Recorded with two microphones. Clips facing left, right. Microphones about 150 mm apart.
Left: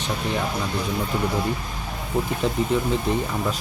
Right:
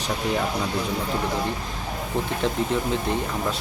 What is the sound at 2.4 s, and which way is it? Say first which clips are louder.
Speech: right 1 dB; 5° left (ahead or behind).